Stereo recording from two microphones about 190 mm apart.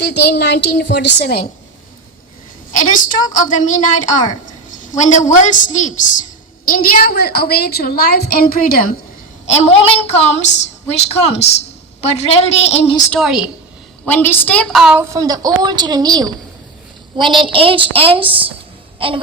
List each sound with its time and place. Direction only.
0.0 s a woman's voice: 60° left (ahead or behind)
2.7 s a woman's voice: 45° left (ahead or behind)
4.7 s a sound: 45° left (ahead or behind)
6.7 s a woman's voice: 50° left (ahead or behind)
9.6 s a woman's voice: 30° left (ahead or behind)
13.1 s a woman's voice: centre (ahead or behind)
14.0 s a woman's voice: 10° left (ahead or behind)
15.1 s a woman's voice: 20° right (ahead or behind)
18.9 s wail: 30° right (ahead or behind)